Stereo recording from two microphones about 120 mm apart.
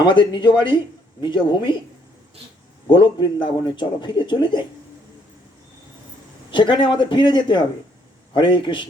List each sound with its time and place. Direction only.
0.0 s a man's voice: 40° left (ahead or behind)
2.8 s speech: 45° left (ahead or behind)
6.5 s a man's voice: 45° left (ahead or behind)